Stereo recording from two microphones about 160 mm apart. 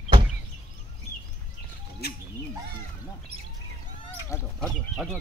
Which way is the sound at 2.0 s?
80° left.